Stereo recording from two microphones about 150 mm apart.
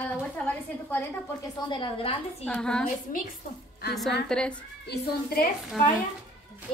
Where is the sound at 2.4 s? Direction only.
5° left (ahead or behind).